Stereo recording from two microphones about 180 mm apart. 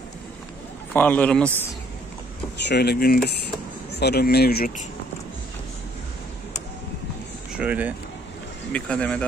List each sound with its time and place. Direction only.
0.9 s a man's voice: 10° left (ahead or behind)
2.6 s speech: 65° left (ahead or behind)
7.5 s speech: 10° right (ahead or behind)
8.7 s speech: 5° left (ahead or behind)